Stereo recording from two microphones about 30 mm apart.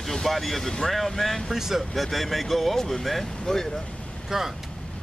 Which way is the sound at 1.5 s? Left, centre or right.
Centre.